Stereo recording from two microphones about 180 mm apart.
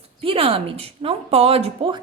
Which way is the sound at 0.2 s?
30° right (ahead or behind).